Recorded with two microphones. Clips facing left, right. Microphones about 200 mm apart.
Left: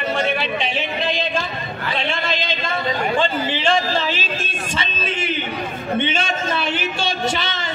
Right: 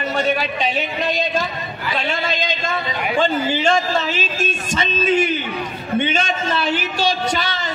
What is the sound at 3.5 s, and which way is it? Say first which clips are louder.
Speech: right 1 dB; 45° right (ahead or behind).